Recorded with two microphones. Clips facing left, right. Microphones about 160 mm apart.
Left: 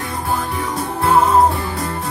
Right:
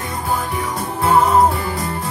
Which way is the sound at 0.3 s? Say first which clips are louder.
Even; centre (ahead or behind).